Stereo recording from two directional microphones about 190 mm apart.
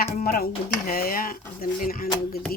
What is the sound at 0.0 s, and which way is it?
Speech, 50° left (ahead or behind).